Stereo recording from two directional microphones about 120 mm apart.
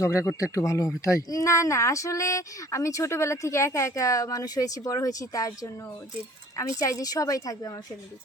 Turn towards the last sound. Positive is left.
turn(degrees=30)  # may be behind; listen again after turning